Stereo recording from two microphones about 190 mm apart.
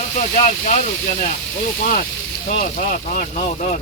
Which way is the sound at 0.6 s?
40° left (ahead or behind).